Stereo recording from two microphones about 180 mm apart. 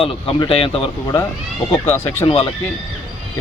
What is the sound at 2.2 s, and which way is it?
Speech, 30° left (ahead or behind).